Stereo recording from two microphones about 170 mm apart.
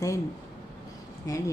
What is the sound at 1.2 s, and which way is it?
Speech, 20° left (ahead or behind).